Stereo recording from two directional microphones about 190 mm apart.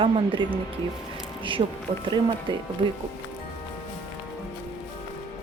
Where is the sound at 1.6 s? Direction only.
30° right (ahead or behind).